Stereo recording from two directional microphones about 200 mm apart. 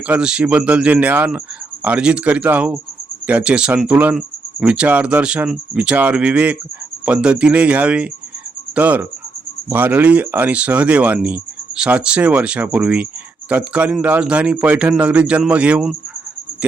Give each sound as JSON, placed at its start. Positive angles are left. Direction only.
{"t": 0.1, "sound": "speech", "side_deg": -5}
{"t": 8.7, "sound": "cricket", "side_deg": -10}
{"t": 9.6, "sound": "speech", "side_deg": -10}